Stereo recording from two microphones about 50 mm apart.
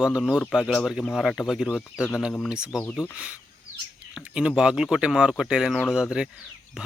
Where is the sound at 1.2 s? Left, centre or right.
Centre.